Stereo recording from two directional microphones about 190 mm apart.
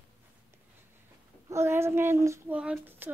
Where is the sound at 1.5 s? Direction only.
15° right (ahead or behind).